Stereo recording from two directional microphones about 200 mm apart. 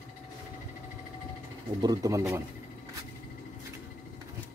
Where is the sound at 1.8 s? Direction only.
20° right (ahead or behind).